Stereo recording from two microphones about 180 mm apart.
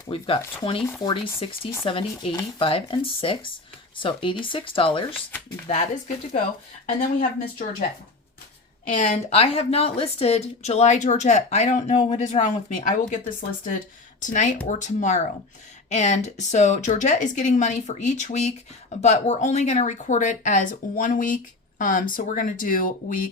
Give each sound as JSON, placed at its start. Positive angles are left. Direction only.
{"t": 0.1, "sound": "a woman's voice", "side_deg": 30}
{"t": 7.2, "sound": "speech", "side_deg": 50}
{"t": 8.9, "sound": "a woman's voice", "side_deg": 45}